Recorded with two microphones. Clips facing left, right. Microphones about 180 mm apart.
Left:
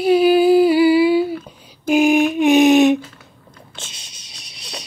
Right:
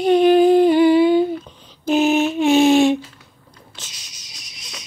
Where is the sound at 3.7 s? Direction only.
25° left (ahead or behind).